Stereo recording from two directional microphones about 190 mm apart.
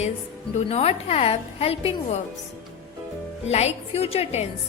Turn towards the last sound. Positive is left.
turn(degrees=35)  # may be behind; listen again after turning